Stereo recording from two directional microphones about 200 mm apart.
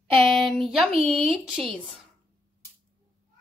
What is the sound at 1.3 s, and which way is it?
Speech, centre (ahead or behind).